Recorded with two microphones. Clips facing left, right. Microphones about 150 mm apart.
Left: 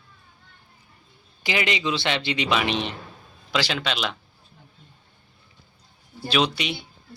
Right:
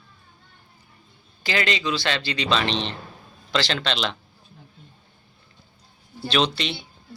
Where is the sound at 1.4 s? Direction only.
15° left (ahead or behind).